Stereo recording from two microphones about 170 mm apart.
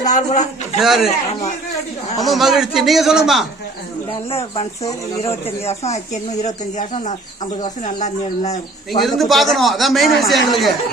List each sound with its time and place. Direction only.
0.0 s speech: 45° left (ahead or behind)
0.8 s speech: centre (ahead or behind)
2.2 s speech: centre (ahead or behind)
4.3 s speech: 35° left (ahead or behind)
9.0 s speech: centre (ahead or behind)